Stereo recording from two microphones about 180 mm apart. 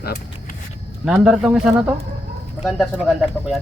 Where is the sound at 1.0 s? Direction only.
5° right (ahead or behind).